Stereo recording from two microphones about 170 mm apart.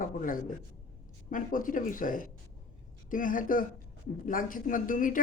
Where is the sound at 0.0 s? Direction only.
55° left (ahead or behind).